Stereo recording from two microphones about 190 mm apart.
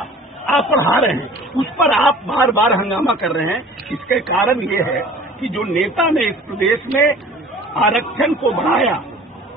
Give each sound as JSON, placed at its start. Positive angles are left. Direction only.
{"t": 0.0, "sound": "a woman's voice", "side_deg": 0}